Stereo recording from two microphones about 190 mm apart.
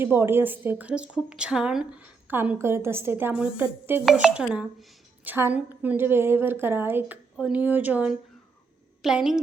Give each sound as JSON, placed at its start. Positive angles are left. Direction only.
{"t": 0.0, "sound": "a woman's voice", "side_deg": -10}